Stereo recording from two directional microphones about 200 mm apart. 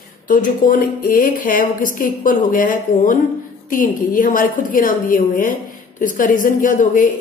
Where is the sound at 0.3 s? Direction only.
40° left (ahead or behind).